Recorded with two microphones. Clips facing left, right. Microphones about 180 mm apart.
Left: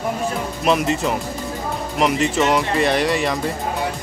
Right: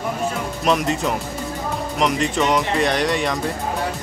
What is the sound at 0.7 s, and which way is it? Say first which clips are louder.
Speech: left 1 dB; centre (ahead or behind).